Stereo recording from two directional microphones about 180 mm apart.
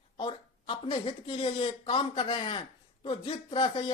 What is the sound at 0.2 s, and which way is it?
Speech, 30° left (ahead or behind).